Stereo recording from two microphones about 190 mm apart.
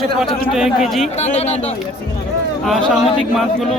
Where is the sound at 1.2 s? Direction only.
35° left (ahead or behind).